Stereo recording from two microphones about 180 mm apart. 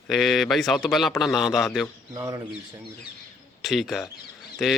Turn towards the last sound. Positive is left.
turn(degrees=0)  # may be behind; listen again after turning